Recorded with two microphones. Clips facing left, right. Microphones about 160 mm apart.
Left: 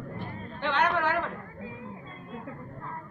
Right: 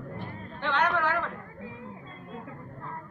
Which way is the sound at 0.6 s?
20° left (ahead or behind).